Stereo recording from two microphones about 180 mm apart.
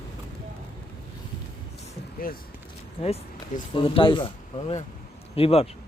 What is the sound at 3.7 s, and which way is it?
Speech, 30° left (ahead or behind).